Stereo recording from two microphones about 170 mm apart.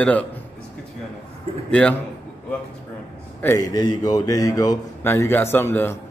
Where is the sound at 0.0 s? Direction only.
10° left (ahead or behind).